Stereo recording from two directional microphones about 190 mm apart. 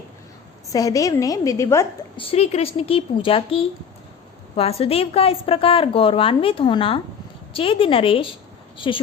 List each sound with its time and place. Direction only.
0.7 s a woman's voice: 20° left (ahead or behind)
2.2 s a woman's voice: 35° left (ahead or behind)